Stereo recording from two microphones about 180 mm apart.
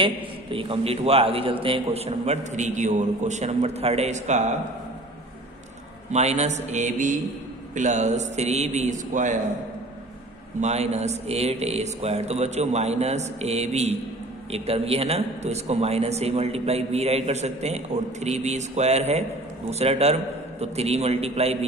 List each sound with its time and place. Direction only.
0.0 s a man's voice: 30° right (ahead or behind)
6.1 s a man's voice: 35° right (ahead or behind)
10.6 s a man's voice: 35° right (ahead or behind)